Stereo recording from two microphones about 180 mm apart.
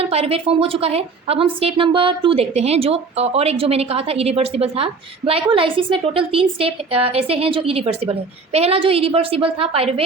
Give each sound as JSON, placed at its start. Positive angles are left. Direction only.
{"t": 0.0, "sound": "a woman's voice", "side_deg": -35}